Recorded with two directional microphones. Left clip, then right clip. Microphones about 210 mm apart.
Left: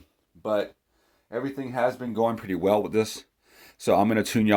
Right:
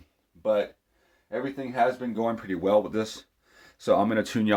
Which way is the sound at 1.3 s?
40° left (ahead or behind).